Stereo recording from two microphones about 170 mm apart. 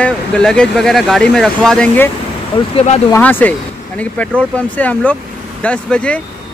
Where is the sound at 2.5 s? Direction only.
30° left (ahead or behind).